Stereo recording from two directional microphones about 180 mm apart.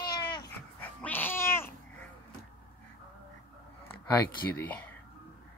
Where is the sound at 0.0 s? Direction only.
25° left (ahead or behind).